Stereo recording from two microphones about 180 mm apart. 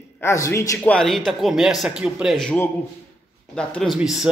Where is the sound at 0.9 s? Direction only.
Centre (ahead or behind).